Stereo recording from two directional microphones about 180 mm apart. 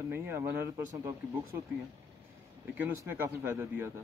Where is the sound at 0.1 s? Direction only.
15° right (ahead or behind).